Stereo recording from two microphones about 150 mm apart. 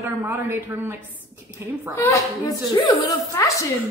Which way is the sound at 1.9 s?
20° left (ahead or behind).